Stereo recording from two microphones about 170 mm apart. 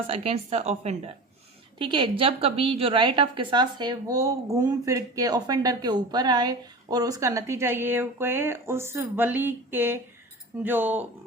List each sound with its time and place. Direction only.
0.1 s a woman's voice: 35° right (ahead or behind)
1.8 s a woman's voice: 30° right (ahead or behind); by 11.0 s 10° right (ahead or behind)